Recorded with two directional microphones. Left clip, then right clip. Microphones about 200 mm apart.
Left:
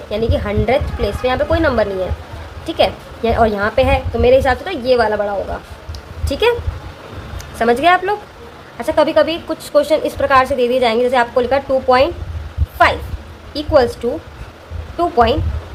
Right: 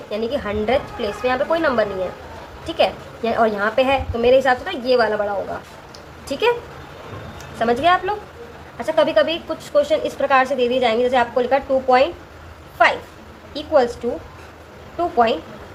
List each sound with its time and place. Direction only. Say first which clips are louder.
0.1 s a woman's voice: left 4 dB; 30° left (ahead or behind)
7.6 s a woman's voice: left 4 dB; 35° left (ahead or behind)
13.5 s a woman's voice: left 4 dB; 30° left (ahead or behind)
14.9 s a woman's voice: left 4 dB; 30° left (ahead or behind)